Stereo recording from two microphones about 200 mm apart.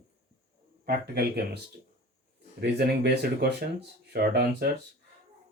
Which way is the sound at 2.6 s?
55° right (ahead or behind).